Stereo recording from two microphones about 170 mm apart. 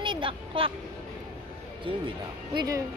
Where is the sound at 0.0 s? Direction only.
30° right (ahead or behind).